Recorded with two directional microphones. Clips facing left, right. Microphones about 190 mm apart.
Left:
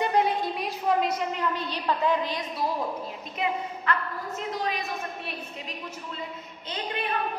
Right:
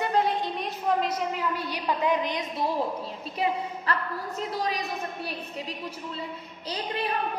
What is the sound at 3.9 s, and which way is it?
Speech, 35° right (ahead or behind).